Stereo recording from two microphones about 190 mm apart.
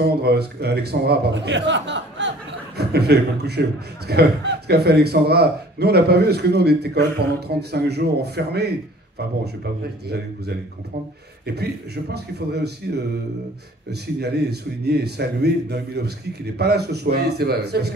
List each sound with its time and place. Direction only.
0.0 s a man's voice: 55° right (ahead or behind)
2.8 s a man's voice: 60° right (ahead or behind)
11.4 s a man's voice: 60° right (ahead or behind)
14.2 s a man's voice: 60° right (ahead or behind)